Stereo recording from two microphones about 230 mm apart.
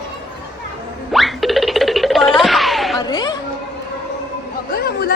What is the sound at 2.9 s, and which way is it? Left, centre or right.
Music, centre.